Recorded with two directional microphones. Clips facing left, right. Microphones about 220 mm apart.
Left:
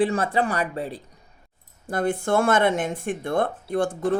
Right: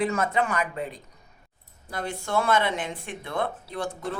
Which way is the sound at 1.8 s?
50° left (ahead or behind).